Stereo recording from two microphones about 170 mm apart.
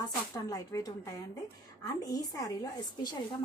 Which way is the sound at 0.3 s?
20° left (ahead or behind).